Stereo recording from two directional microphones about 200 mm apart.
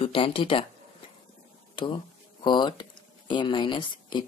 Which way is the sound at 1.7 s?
25° left (ahead or behind).